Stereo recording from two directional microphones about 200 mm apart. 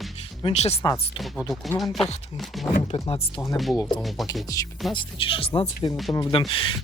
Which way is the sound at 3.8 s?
15° left (ahead or behind).